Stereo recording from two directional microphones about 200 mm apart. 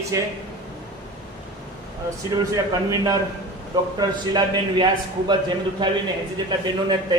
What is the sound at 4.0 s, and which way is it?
A man's voice, 20° right (ahead or behind).